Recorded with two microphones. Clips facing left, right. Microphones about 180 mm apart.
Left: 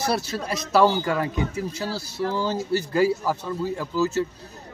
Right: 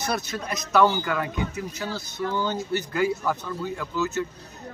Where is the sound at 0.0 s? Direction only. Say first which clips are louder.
Left 3 dB; 30° left (ahead or behind).